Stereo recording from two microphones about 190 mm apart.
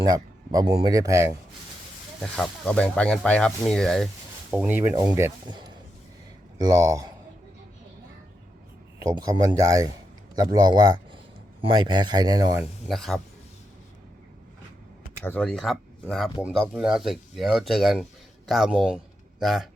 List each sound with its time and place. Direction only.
0.0 s speech: 20° right (ahead or behind)
2.2 s speech: 5° left (ahead or behind); by 7.1 s 20° right (ahead or behind)
9.0 s speech: 20° right (ahead or behind)
12.9 s speech: centre (ahead or behind)
15.2 s speech: 10° left (ahead or behind)